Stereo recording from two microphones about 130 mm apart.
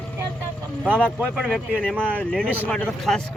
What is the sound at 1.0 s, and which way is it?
Speech, 10° left (ahead or behind).